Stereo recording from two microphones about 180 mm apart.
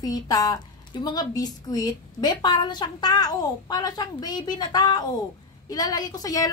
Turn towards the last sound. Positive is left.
turn(degrees=20)  # may be behind; listen again after turning